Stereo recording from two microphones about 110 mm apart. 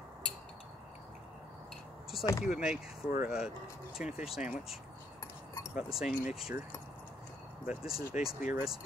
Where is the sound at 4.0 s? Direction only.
5° right (ahead or behind).